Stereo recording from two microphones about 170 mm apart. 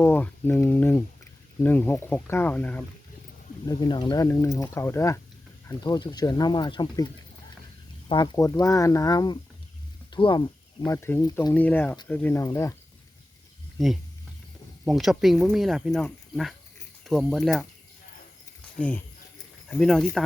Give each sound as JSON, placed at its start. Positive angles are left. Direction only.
{"t": 0.0, "sound": "speech", "side_deg": 10}
{"t": 3.7, "sound": "speech", "side_deg": 25}
{"t": 8.1, "sound": "speech", "side_deg": 25}
{"t": 11.5, "sound": "speech", "side_deg": 10}
{"t": 13.7, "sound": "speech", "side_deg": 0}
{"t": 18.8, "sound": "speech", "side_deg": 10}